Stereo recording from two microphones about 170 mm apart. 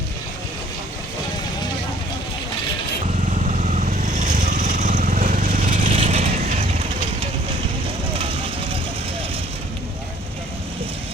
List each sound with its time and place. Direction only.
3.6 s vehicle: 45° right (ahead or behind)
6.0 s pulleys: 40° right (ahead or behind)
8.2 s vehicle: 35° right (ahead or behind)